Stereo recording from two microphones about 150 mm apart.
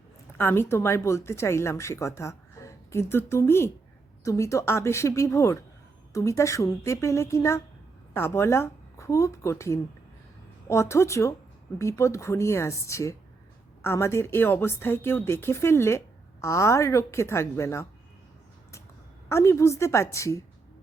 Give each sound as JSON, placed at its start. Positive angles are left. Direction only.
{"t": 0.3, "sound": "a woman's voice", "side_deg": 15}
{"t": 19.3, "sound": "a woman's voice", "side_deg": 20}